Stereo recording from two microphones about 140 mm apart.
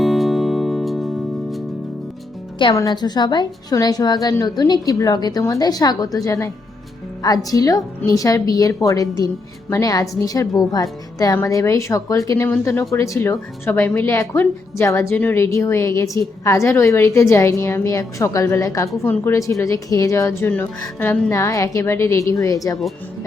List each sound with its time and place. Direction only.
0.0 s music: centre (ahead or behind)
2.7 s a woman's voice: 30° left (ahead or behind)
7.5 s a woman's voice: 25° left (ahead or behind)